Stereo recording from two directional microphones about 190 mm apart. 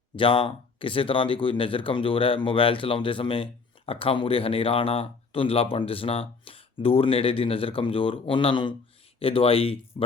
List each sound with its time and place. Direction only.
0.2 s speech: 30° left (ahead or behind)